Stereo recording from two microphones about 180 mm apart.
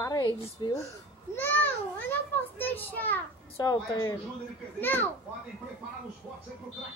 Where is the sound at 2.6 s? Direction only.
10° left (ahead or behind).